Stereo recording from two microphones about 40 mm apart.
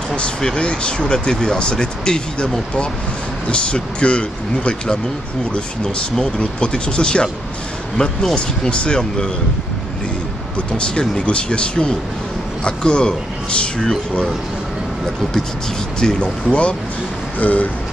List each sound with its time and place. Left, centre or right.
0.6 s speech: left
8.4 s speech: left
10.8 s speech: left
16.0 s speech: centre
17.4 s train: left